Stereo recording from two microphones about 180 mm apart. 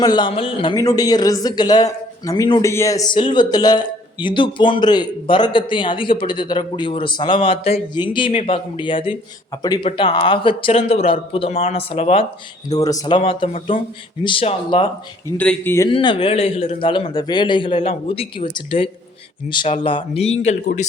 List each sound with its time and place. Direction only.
0.0 s speech: 25° left (ahead or behind)
12.6 s speech: 20° left (ahead or behind)
15.4 s a man's voice: 10° left (ahead or behind)
15.9 s speech: 30° left (ahead or behind)